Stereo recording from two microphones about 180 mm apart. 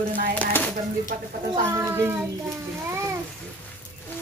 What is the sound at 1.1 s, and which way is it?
Speech, 50° right (ahead or behind).